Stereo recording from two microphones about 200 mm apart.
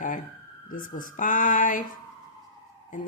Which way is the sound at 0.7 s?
40° left (ahead or behind).